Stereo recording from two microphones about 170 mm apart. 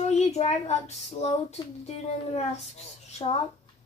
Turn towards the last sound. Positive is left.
turn(degrees=40)  # may be behind; listen again after turning